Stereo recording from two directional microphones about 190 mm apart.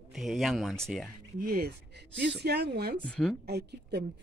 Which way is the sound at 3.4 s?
60° right (ahead or behind).